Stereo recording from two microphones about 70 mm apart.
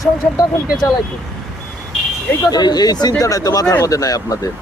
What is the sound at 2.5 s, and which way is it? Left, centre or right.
Speech, left.